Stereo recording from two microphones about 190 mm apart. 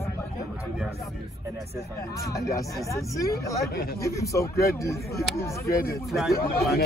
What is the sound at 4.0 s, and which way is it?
A man's voice, 15° left (ahead or behind).